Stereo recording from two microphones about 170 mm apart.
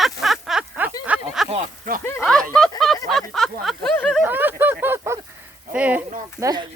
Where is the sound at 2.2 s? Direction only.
5° left (ahead or behind).